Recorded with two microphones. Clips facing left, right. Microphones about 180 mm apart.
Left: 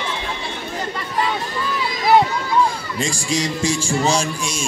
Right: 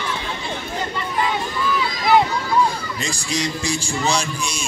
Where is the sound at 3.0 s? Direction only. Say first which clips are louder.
Left 3 dB; 45° left (ahead or behind).